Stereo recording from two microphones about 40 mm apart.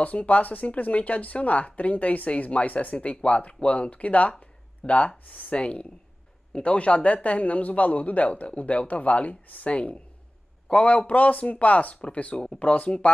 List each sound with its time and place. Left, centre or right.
0.0 s a man's voice: left
5.6 s a man's voice: left